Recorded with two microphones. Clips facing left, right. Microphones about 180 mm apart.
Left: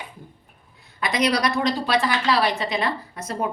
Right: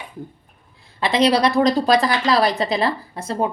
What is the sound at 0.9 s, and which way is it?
A woman's voice, 30° right (ahead or behind).